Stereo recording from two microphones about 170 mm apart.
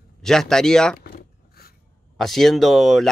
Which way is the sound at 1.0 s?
60° left (ahead or behind).